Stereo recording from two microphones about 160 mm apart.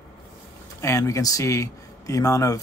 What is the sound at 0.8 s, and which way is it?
Speech, 20° left (ahead or behind).